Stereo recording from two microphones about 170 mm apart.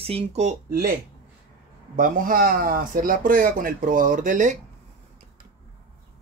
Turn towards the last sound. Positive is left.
turn(degrees=-50)  # may be behind; listen again after turning